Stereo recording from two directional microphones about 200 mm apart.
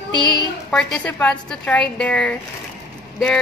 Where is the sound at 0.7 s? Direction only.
5° left (ahead or behind).